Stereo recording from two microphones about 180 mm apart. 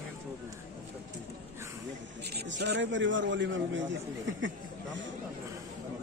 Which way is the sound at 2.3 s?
65° right (ahead or behind).